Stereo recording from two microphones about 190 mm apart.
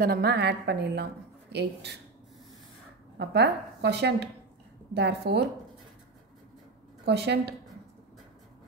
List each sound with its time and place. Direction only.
0.0 s a woman's voice: 55° right (ahead or behind)
3.2 s a woman's voice: 60° right (ahead or behind)
7.1 s a woman's voice: 60° right (ahead or behind)